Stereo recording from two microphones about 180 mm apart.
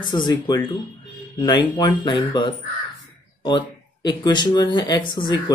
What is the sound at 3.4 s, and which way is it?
Speech, 25° left (ahead or behind).